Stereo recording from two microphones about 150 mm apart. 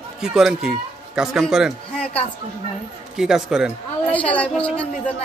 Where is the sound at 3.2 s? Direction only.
5° right (ahead or behind).